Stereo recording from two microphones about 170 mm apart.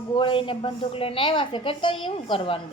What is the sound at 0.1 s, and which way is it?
A woman's voice, 30° left (ahead or behind).